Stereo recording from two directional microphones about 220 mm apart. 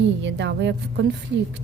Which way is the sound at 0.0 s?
55° right (ahead or behind).